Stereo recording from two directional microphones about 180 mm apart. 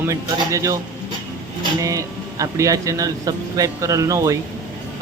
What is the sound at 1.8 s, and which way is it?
Speech, 20° right (ahead or behind).